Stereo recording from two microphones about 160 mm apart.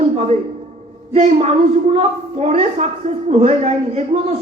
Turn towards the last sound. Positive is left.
turn(degrees=-40)  # may be behind; listen again after turning